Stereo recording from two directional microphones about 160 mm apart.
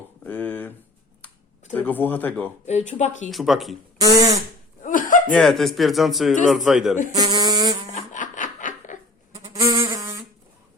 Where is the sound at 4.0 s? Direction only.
20° right (ahead or behind).